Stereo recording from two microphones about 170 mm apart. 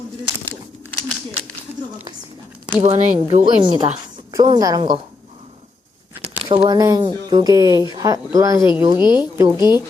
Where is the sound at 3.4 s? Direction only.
30° right (ahead or behind).